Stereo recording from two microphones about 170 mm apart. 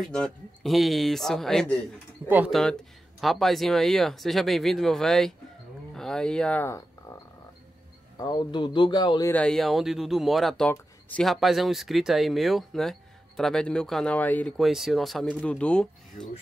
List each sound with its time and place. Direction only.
0.0 s speech: 5° left (ahead or behind)
2.2 s speech: 10° right (ahead or behind)
2.5 s speech: 5° left (ahead or behind)
8.2 s a man's voice: 25° left (ahead or behind)
9.3 s speech: 5° left (ahead or behind)